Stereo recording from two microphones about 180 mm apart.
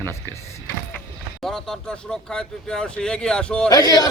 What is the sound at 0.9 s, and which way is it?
Speech, centre (ahead or behind).